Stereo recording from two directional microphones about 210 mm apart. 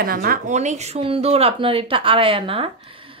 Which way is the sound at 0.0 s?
45° right (ahead or behind).